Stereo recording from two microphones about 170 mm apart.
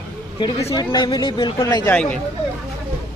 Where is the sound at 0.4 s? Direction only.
30° left (ahead or behind).